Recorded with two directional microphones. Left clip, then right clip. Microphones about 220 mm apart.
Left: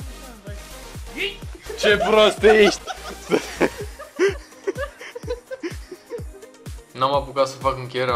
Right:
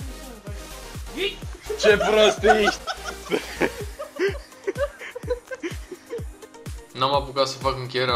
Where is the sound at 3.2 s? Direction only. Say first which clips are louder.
Left 4 dB; 30° left (ahead or behind).